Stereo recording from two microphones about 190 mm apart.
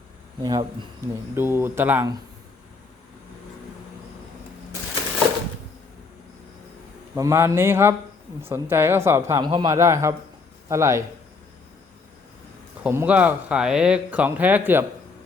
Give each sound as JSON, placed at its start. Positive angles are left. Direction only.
{"t": 0.4, "sound": "speech", "side_deg": -20}
{"t": 7.2, "sound": "speech", "side_deg": -15}
{"t": 12.8, "sound": "speech", "side_deg": -10}